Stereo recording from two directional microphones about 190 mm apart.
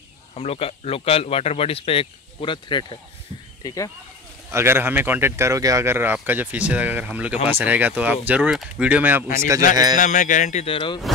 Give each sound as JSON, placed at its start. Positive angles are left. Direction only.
{"t": 0.3, "sound": "speech", "side_deg": 30}
{"t": 4.5, "sound": "speech", "side_deg": -15}
{"t": 9.9, "sound": "speech", "side_deg": 40}